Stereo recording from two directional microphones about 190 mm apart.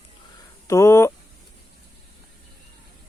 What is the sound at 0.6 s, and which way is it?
Speech, 15° left (ahead or behind).